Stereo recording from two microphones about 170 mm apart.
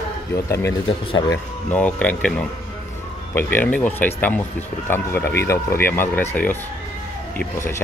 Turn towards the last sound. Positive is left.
turn(degrees=15)  # may be behind; listen again after turning